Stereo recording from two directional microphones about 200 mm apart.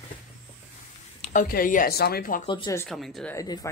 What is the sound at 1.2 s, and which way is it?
Speech, 45° left (ahead or behind).